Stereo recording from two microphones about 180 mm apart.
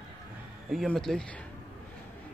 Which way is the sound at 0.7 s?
Centre (ahead or behind).